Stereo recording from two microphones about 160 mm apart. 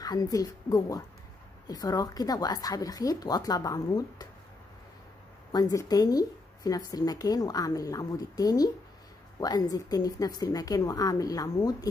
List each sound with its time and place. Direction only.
0.0 s speech: 25° left (ahead or behind)
5.5 s speech: 25° left (ahead or behind)